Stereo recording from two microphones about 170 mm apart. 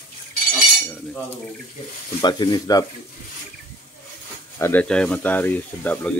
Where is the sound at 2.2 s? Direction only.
25° left (ahead or behind).